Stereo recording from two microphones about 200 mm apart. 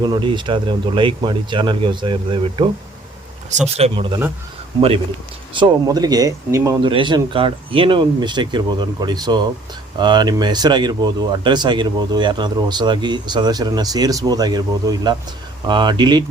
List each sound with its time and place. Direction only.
0.0 s speech: 20° right (ahead or behind)
3.8 s speech: 25° right (ahead or behind)
5.5 s speech: 20° right (ahead or behind)